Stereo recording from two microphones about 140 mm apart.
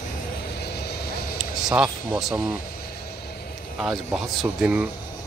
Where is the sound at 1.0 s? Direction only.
90° left.